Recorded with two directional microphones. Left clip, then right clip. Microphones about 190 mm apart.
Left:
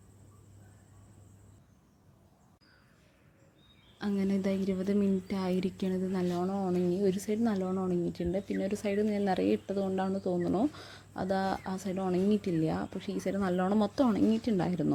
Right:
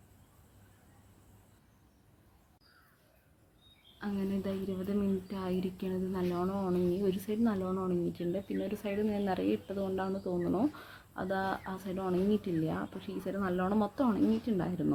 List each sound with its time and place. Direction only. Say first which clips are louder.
3.9 s a woman's voice: left 4 dB; 40° left (ahead or behind)
6.3 s speech: even; 20° left (ahead or behind); by 14.9 s 35° left (ahead or behind)